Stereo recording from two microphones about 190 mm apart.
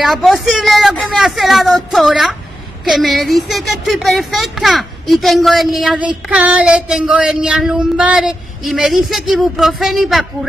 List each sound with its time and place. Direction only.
0.0 s speech: centre (ahead or behind)